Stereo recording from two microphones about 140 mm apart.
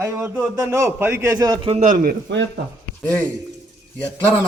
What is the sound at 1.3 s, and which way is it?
Speech, 30° right (ahead or behind).